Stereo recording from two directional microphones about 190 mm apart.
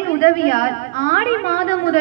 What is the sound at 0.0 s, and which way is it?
A woman's voice, 50° left (ahead or behind).